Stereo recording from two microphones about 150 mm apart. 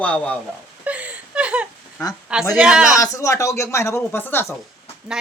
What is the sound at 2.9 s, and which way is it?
Speech, 20° left (ahead or behind).